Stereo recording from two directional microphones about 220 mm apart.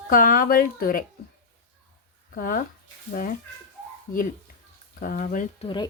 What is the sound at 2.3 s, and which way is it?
Speech, 40° left (ahead or behind).